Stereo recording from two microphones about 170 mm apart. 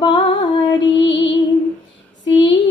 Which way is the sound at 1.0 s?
90° left.